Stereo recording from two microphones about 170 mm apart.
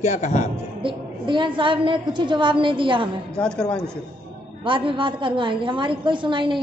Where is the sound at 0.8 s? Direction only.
30° right (ahead or behind).